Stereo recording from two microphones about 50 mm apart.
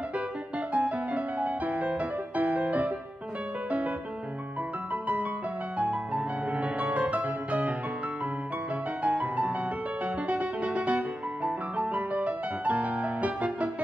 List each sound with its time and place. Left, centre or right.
0.7 s music: right
5.8 s music: right
9.0 s music: right